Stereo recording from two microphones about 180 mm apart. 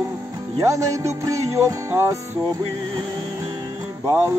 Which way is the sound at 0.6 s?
15° right (ahead or behind).